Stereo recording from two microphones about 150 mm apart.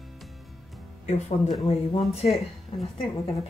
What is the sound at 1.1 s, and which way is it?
A woman's voice, 45° left (ahead or behind).